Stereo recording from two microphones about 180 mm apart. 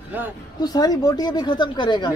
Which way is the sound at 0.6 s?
20° left (ahead or behind).